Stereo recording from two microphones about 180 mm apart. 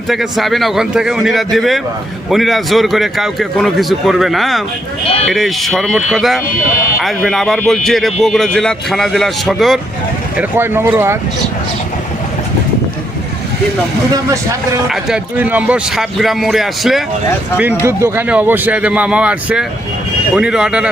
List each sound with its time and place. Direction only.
0.1 s a man's voice: centre (ahead or behind)
10.3 s speech: 10° right (ahead or behind)
14.8 s a man's voice: 5° right (ahead or behind)
17.6 s a man's voice: 10° right (ahead or behind)